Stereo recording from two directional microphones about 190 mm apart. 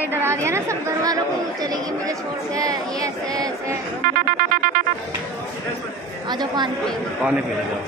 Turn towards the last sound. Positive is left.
turn(degrees=-5)  # may be behind; listen again after turning